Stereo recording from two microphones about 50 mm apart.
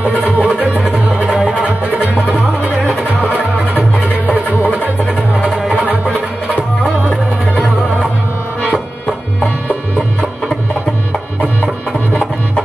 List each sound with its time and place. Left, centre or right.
0.4 s music: right
3.0 s music: right
5.7 s music: right